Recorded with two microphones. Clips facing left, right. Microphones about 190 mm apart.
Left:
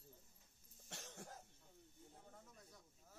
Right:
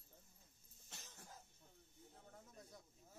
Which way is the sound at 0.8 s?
65° left (ahead or behind).